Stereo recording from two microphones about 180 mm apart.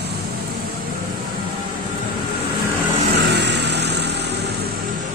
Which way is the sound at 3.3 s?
70° right (ahead or behind).